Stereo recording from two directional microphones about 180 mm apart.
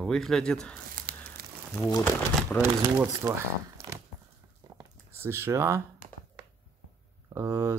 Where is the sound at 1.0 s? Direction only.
55° right (ahead or behind).